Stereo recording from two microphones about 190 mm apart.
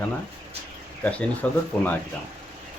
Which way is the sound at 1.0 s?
5° left (ahead or behind).